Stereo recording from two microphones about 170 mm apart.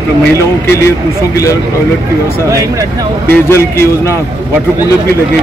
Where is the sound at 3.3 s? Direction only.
15° left (ahead or behind).